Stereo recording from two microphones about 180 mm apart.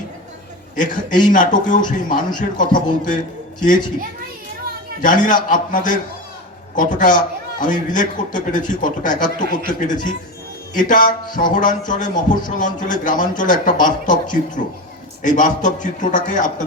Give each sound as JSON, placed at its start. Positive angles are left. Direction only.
{"t": 1.2, "sound": "a man's voice", "side_deg": 45}
{"t": 5.0, "sound": "a man's voice", "side_deg": 45}